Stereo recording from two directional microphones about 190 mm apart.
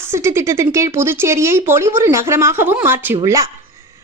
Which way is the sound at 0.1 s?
15° right (ahead or behind).